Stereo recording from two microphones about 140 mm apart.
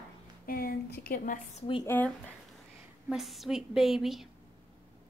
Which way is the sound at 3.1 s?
Centre (ahead or behind).